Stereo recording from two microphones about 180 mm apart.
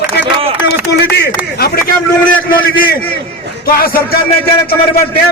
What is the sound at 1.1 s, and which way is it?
A man's voice, 60° left (ahead or behind).